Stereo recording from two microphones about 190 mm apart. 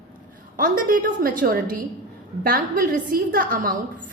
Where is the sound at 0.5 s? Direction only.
50° right (ahead or behind).